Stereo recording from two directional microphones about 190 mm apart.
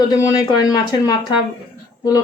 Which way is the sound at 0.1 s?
20° left (ahead or behind).